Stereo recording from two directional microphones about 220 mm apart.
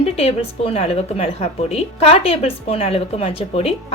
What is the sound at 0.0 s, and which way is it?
A woman's voice, 30° left (ahead or behind).